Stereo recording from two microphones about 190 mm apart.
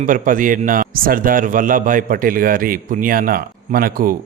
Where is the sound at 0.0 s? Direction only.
45° right (ahead or behind).